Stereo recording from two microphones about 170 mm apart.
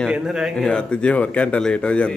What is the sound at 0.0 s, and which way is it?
A man's voice, 5° right (ahead or behind).